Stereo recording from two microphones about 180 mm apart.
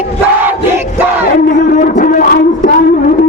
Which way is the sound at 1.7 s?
45° left (ahead or behind).